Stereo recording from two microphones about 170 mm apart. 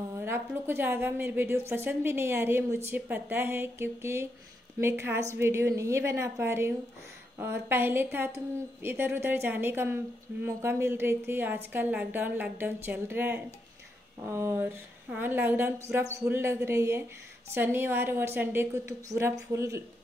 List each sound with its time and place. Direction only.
0.2 s a woman's voice: 15° right (ahead or behind)